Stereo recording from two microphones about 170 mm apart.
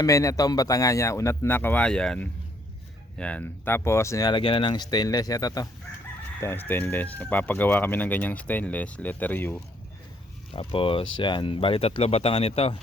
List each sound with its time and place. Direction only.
0.0 s speech: 20° left (ahead or behind)
10.5 s speech: 35° left (ahead or behind)